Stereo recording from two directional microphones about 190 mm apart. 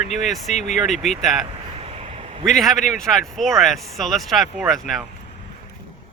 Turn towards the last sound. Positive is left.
turn(degrees=0)  # may be behind; listen again after turning